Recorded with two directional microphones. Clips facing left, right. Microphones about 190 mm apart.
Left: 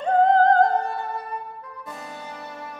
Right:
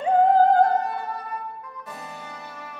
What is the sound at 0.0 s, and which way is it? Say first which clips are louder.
Music: even; 10° right (ahead or behind).